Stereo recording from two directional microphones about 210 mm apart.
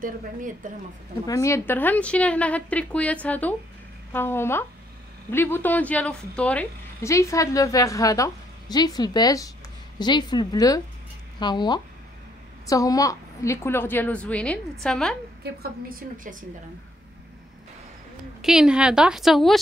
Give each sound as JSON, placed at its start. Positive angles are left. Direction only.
{"t": 1.2, "sound": "a woman's voice", "side_deg": 15}
{"t": 15.4, "sound": "a woman's voice", "side_deg": -45}
{"t": 18.4, "sound": "a woman's voice", "side_deg": -5}